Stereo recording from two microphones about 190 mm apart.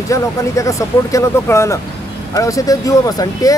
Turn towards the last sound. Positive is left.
turn(degrees=20)  # may be behind; listen again after turning